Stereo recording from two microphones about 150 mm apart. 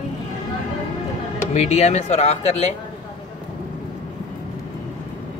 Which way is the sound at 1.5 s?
50° left (ahead or behind).